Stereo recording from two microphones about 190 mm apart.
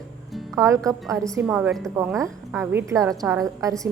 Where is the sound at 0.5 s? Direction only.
15° right (ahead or behind).